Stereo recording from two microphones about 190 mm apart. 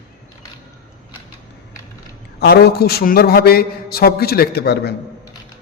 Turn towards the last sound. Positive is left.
turn(degrees=60)  # may be behind; listen again after turning